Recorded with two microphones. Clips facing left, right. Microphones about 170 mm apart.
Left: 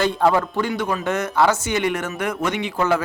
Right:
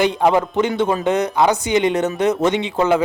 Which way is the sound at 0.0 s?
20° right (ahead or behind).